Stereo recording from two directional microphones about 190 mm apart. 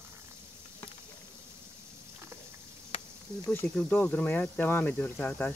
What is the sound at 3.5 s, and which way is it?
Speech, 10° left (ahead or behind).